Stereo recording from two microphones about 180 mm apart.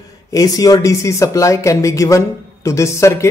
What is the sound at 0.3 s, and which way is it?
Speech, 20° left (ahead or behind).